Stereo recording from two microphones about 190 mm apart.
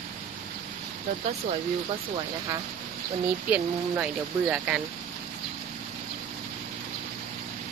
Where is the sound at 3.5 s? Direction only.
5° right (ahead or behind).